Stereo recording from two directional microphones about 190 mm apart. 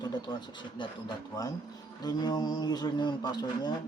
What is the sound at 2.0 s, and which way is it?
Speech, 20° left (ahead or behind).